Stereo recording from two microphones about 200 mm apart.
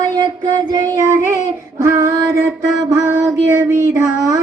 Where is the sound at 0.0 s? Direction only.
20° right (ahead or behind).